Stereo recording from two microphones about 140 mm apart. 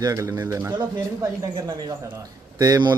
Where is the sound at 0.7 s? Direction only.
30° right (ahead or behind).